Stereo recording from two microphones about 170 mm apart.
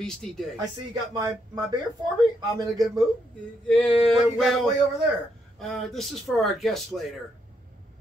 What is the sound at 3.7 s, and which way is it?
Speech, centre (ahead or behind).